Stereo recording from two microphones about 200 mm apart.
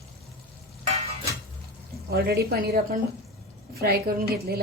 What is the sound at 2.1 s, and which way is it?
A woman's voice, 50° right (ahead or behind).